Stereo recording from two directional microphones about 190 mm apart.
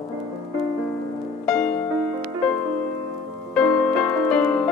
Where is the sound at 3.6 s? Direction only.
5° left (ahead or behind).